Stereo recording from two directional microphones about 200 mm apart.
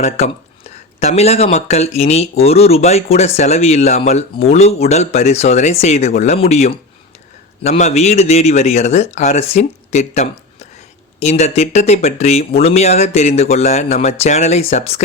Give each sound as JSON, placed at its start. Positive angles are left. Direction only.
{"t": 0.2, "sound": "a man's voice", "side_deg": 30}